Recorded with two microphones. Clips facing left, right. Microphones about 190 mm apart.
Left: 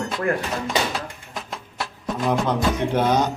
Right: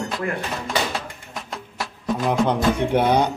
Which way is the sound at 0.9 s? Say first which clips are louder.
Even; centre (ahead or behind).